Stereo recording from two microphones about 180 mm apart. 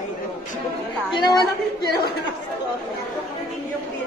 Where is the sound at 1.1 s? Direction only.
25° left (ahead or behind).